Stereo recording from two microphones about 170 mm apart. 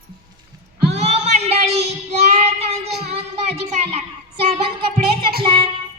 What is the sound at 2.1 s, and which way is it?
Child singing, 40° right (ahead or behind).